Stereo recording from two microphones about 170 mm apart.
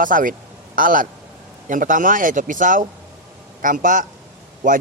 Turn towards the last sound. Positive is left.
turn(degrees=-50)  # may be behind; listen again after turning